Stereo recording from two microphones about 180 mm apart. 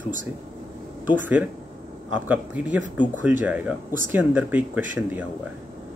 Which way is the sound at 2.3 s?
10° right (ahead or behind).